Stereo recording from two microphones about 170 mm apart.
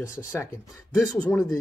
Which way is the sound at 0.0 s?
15° left (ahead or behind).